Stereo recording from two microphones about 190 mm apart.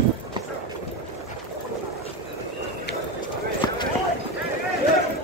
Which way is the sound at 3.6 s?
20° left (ahead or behind).